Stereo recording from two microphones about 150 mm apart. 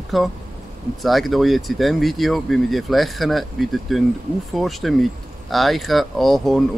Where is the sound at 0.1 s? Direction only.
Centre (ahead or behind).